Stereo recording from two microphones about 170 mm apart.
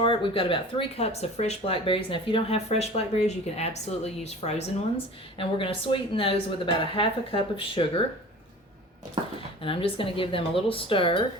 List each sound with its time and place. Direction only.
0.0 s speech: 30° left (ahead or behind)
9.6 s speech: 30° left (ahead or behind)